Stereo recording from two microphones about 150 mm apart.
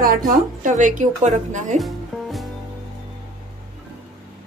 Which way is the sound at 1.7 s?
Centre (ahead or behind).